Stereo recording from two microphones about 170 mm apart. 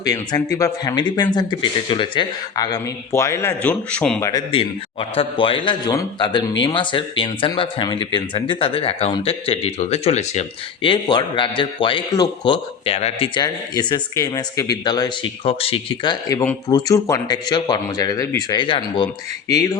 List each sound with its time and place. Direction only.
0.0 s a man's voice: 20° left (ahead or behind); by 4.2 s 5° left (ahead or behind)
4.2 s a man's voice: 20° left (ahead or behind)
4.5 s a man's voice: 35° left (ahead or behind)
10.8 s a man's voice: 30° left (ahead or behind)
16.6 s a man's voice: 20° left (ahead or behind)